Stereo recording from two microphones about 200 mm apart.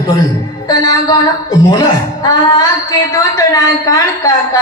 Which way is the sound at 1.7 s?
20° left (ahead or behind).